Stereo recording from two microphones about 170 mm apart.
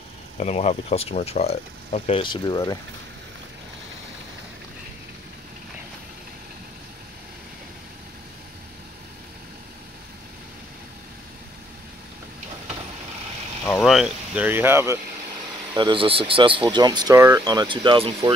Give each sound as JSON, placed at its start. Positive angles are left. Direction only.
{"t": 0.4, "sound": "speech", "side_deg": 40}
{"t": 13.7, "sound": "speech", "side_deg": 0}
{"t": 15.7, "sound": "speech", "side_deg": -30}